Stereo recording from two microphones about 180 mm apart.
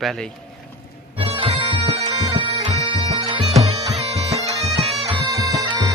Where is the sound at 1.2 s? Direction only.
30° right (ahead or behind).